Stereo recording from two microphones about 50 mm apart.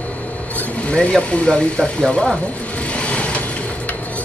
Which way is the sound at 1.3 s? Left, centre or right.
Left.